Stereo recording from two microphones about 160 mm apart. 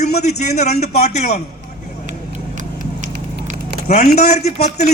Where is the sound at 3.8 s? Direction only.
45° left (ahead or behind).